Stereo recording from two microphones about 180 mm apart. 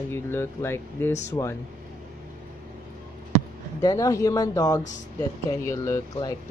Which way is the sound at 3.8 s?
20° left (ahead or behind).